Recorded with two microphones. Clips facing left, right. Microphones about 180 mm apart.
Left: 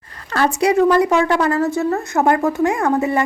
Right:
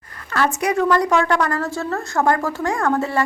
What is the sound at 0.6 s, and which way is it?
A woman's voice, 30° left (ahead or behind).